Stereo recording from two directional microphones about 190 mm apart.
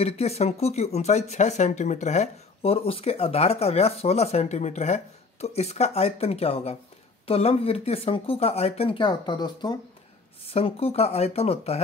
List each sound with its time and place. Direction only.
0.0 s speech: 35° left (ahead or behind)